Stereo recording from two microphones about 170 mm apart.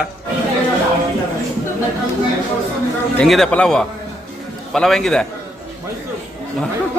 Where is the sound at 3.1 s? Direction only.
5° left (ahead or behind).